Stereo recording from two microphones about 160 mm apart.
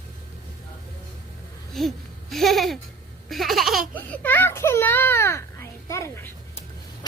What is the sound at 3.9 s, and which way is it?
A child's voice, 10° left (ahead or behind).